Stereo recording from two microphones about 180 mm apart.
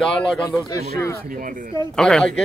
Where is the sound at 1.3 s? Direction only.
45° right (ahead or behind).